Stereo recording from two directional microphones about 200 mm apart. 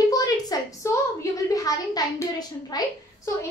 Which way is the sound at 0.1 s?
20° left (ahead or behind).